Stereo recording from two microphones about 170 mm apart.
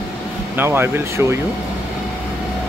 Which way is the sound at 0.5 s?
15° right (ahead or behind).